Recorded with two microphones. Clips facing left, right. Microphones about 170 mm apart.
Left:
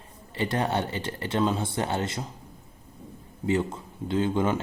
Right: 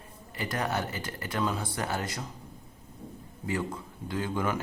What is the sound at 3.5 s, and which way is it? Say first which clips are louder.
Speech: left 6 dB; 25° left (ahead or behind).